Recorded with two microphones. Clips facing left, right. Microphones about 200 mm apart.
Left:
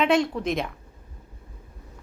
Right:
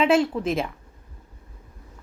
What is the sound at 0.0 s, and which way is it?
Speech, 5° right (ahead or behind).